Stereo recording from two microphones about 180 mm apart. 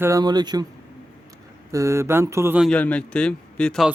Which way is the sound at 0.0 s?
20° right (ahead or behind).